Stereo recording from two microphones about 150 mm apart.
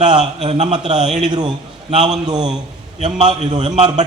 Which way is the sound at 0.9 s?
50° right (ahead or behind).